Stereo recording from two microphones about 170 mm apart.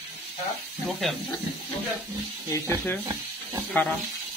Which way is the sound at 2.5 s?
15° left (ahead or behind).